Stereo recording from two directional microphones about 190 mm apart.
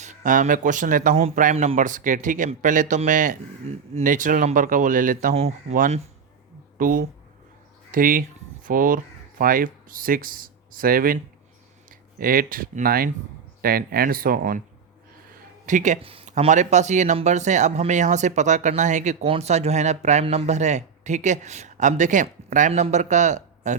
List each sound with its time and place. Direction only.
0.0 s speech: 40° right (ahead or behind)
15.6 s speech: 40° right (ahead or behind)